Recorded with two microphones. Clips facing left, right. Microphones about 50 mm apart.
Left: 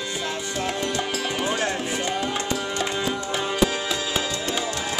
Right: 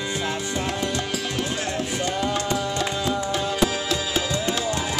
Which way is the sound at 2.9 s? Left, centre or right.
Left.